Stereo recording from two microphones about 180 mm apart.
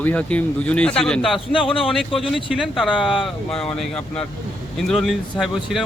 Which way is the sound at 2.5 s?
Centre (ahead or behind).